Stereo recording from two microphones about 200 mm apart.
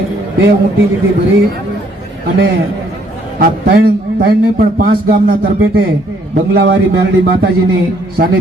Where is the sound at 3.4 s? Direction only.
50° right (ahead or behind).